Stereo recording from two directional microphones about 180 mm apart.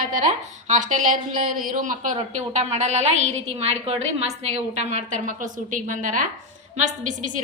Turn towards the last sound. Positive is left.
turn(degrees=-45)  # may be behind; listen again after turning